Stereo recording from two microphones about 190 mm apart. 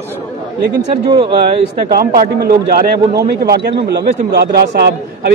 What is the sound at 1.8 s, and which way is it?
A man's voice, 50° right (ahead or behind).